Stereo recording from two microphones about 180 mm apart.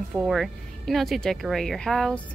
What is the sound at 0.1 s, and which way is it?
Speech, centre (ahead or behind).